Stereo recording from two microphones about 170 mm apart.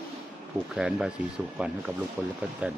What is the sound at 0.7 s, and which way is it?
Speech, 5° right (ahead or behind).